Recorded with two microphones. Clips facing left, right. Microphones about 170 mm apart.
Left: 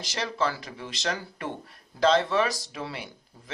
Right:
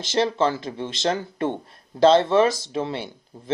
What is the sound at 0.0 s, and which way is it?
Speech, 25° right (ahead or behind).